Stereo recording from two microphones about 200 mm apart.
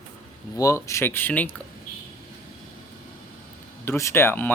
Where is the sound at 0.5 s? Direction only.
15° left (ahead or behind).